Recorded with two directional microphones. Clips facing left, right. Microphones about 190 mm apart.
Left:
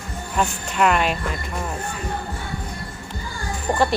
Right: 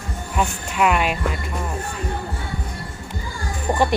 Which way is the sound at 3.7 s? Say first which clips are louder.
Right 1 dB; 30° right (ahead or behind).